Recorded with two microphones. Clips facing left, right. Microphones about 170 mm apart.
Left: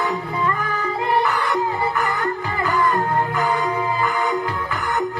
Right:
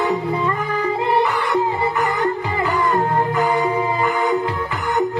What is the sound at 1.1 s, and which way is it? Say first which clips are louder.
Music: right 1 dB; 20° right (ahead or behind).